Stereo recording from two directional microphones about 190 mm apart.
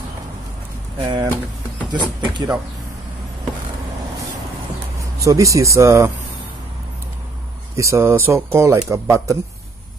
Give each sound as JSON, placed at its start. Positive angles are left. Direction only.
{"t": 0.9, "sound": "speech", "side_deg": -25}
{"t": 5.2, "sound": "speech", "side_deg": -15}
{"t": 7.7, "sound": "speech", "side_deg": -15}